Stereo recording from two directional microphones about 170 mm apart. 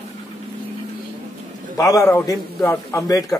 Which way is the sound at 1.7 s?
20° left (ahead or behind).